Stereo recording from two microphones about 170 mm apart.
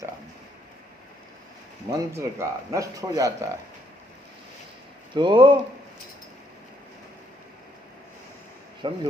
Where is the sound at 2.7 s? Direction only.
20° right (ahead or behind).